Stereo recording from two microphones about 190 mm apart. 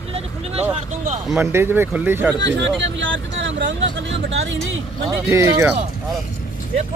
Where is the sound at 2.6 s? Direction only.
80° right.